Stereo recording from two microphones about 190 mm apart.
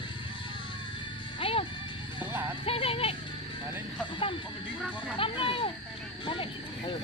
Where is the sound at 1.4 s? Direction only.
30° left (ahead or behind).